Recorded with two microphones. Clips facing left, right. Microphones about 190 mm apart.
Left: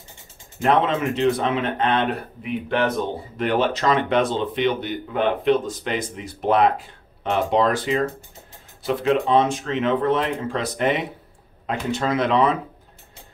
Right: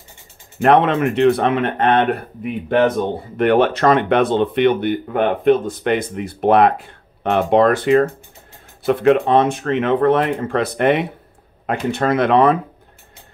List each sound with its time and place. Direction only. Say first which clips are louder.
0.6 s speech: right 6 dB; 60° right (ahead or behind)
3.3 s speech: right 7 dB; 60° right (ahead or behind)